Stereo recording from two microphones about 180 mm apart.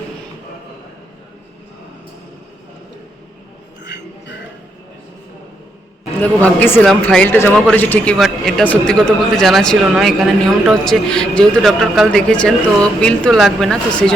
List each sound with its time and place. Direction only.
6.1 s a man's voice: 10° left (ahead or behind)